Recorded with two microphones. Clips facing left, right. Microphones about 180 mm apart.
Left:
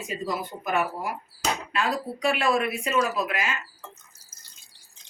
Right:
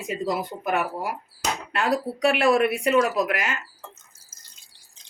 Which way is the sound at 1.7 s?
65° right (ahead or behind).